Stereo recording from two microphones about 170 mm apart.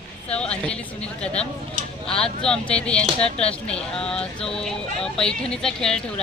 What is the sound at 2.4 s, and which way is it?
Speech, 5° left (ahead or behind).